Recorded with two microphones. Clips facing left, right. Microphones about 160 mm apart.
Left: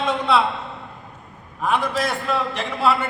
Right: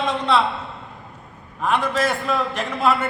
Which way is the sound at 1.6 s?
Centre (ahead or behind).